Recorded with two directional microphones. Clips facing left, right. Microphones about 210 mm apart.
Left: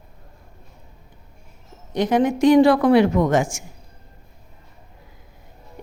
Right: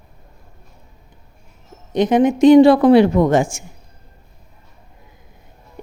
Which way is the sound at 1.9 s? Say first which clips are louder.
Right 4 dB; 20° right (ahead or behind).